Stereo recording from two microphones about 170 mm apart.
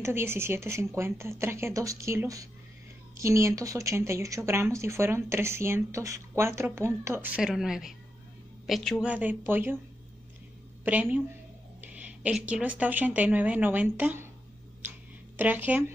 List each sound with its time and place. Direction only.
0.0 s a woman's voice: 15° right (ahead or behind)
10.9 s speech: 10° right (ahead or behind)
15.3 s speech: 10° right (ahead or behind)